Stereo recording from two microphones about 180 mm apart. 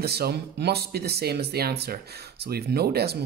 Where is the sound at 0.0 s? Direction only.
60° right (ahead or behind).